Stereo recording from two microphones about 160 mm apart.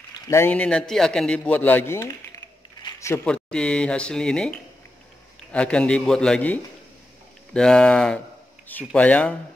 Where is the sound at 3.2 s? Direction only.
5° left (ahead or behind).